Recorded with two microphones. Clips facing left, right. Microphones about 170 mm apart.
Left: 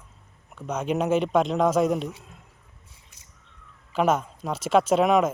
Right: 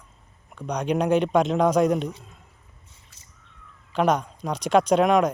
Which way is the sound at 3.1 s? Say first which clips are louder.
Right 1 dB; 15° left (ahead or behind).